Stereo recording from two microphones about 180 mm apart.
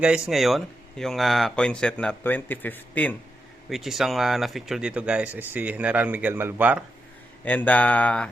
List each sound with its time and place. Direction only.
0.0 s speech: 5° right (ahead or behind)
3.7 s speech: centre (ahead or behind)
7.4 s speech: 10° left (ahead or behind)